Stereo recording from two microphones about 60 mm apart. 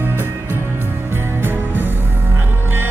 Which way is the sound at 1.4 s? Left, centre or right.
Right.